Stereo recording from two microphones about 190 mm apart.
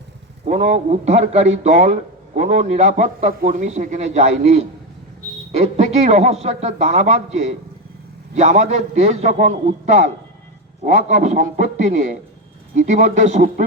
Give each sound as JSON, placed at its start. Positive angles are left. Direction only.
{"t": 0.4, "sound": "speech", "side_deg": -35}